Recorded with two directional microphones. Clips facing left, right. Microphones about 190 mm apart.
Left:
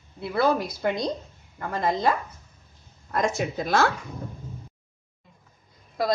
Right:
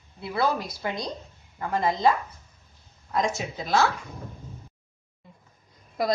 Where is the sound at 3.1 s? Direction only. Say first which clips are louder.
Left 2 dB; 55° left (ahead or behind).